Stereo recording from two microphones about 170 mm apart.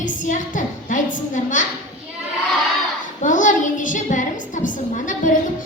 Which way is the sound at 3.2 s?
50° left (ahead or behind).